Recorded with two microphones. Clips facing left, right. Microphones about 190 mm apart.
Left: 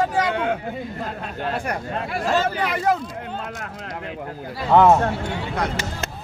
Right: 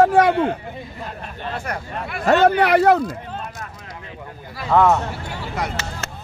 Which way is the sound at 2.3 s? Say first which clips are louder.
Right 9 dB; 65° right (ahead or behind).